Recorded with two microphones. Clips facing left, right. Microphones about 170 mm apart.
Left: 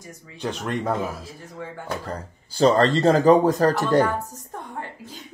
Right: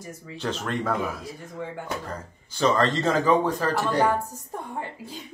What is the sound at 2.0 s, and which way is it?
Speech, 35° left (ahead or behind).